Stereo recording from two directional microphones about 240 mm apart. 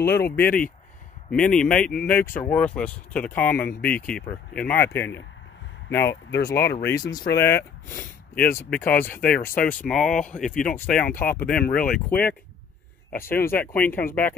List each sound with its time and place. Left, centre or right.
0.2 s speech: centre
11.6 s speech: left
13.2 s speech: centre